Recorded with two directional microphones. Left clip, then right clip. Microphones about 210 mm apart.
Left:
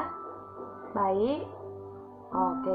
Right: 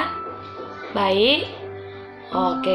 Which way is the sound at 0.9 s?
40° right (ahead or behind).